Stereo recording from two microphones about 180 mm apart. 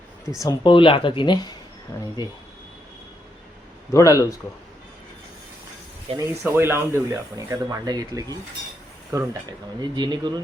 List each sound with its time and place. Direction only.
0.3 s speech: 25° left (ahead or behind)
3.9 s speech: 20° left (ahead or behind)
6.1 s speech: 35° right (ahead or behind)
6.5 s speech: 15° right (ahead or behind)